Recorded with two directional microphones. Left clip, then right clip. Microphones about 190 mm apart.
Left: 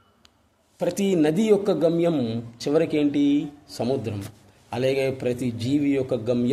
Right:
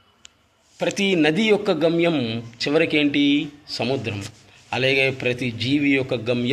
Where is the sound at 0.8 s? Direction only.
5° left (ahead or behind).